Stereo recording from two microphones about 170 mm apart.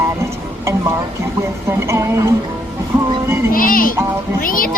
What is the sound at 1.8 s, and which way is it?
Music, 15° right (ahead or behind).